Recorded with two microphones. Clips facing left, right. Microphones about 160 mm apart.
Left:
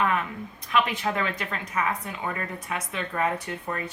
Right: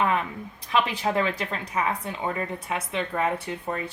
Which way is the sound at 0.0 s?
30° right (ahead or behind).